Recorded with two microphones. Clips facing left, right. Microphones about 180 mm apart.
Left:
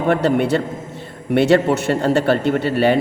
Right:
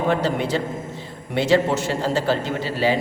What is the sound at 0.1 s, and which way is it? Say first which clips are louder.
A man's voice: left 9 dB; 60° left (ahead or behind).